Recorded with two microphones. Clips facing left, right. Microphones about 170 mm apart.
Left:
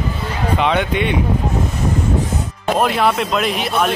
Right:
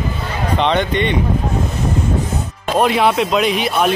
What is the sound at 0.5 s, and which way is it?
Speech, 5° left (ahead or behind).